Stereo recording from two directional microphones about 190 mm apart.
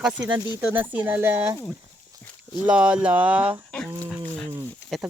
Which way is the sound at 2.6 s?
5° right (ahead or behind).